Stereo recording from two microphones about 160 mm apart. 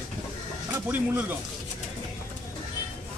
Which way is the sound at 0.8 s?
10° right (ahead or behind).